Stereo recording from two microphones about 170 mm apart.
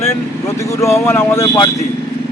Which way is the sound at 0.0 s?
15° left (ahead or behind).